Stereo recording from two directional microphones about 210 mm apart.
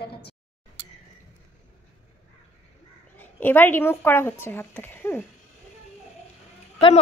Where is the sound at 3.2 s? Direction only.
10° left (ahead or behind).